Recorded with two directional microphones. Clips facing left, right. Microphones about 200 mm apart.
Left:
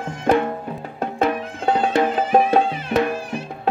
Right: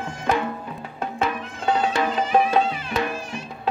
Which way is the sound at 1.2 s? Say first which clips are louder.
Left 6 dB; 55° left (ahead or behind).